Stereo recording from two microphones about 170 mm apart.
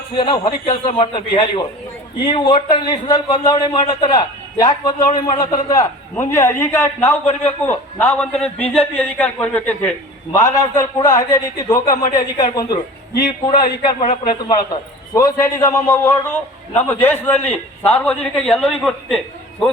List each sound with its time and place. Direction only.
0.2 s a man's voice: 30° left (ahead or behind); by 9.7 s 10° left (ahead or behind)
10.3 s a man's voice: 20° left (ahead or behind)
14.4 s a man's voice: 25° left (ahead or behind); by 19.7 s centre (ahead or behind)